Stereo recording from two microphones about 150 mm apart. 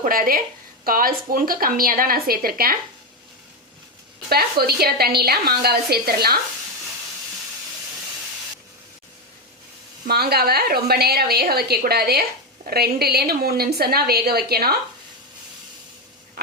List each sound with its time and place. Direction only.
0.0 s a woman's voice: 70° right (ahead or behind)
4.3 s a woman's voice: 90° right
10.1 s a woman's voice: 90° right